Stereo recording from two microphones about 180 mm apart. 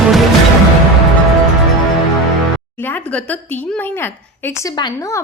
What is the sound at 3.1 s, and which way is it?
A woman's voice, 10° left (ahead or behind).